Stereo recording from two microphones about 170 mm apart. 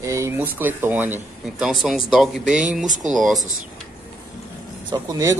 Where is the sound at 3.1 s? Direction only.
Centre (ahead or behind).